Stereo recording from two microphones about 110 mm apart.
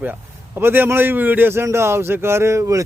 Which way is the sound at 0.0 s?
20° right (ahead or behind).